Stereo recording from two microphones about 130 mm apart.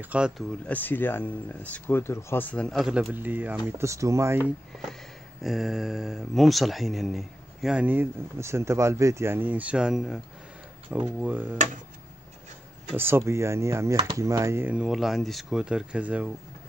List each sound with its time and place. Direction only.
0.0 s speech: 10° right (ahead or behind)
0.7 s speech: 15° left (ahead or behind)
2.9 s speech: 10° right (ahead or behind)
5.4 s speech: centre (ahead or behind)
12.9 s speech: 15° right (ahead or behind)
14.8 s speech: centre (ahead or behind)